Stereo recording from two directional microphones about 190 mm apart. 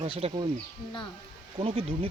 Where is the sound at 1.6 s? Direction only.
30° right (ahead or behind).